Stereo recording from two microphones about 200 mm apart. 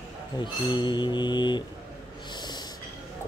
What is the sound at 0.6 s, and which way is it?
Mantra, 20° left (ahead or behind).